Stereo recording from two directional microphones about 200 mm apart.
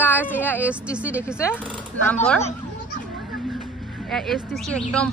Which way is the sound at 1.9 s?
90° right.